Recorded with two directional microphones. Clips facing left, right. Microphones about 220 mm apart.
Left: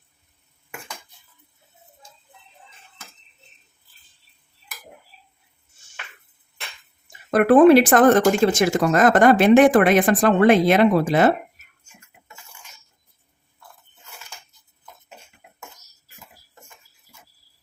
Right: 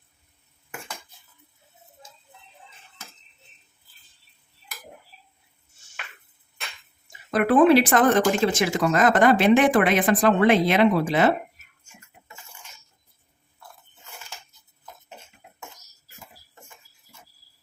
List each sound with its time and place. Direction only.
7.3 s speech: 55° left (ahead or behind)